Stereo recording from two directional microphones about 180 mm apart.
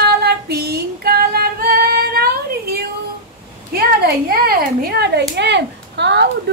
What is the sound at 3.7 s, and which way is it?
A child's voice, 60° right (ahead or behind).